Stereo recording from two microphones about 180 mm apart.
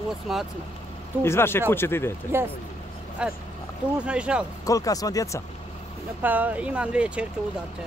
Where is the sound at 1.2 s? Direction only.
15° left (ahead or behind).